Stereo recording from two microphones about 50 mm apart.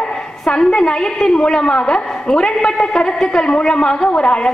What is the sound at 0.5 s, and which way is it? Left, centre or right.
A woman's voice, centre.